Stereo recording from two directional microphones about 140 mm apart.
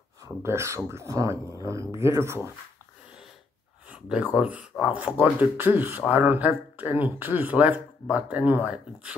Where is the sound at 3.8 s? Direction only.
10° right (ahead or behind).